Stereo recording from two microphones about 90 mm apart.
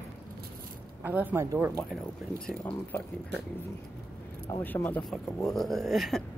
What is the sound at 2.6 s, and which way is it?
Speech, 25° left (ahead or behind).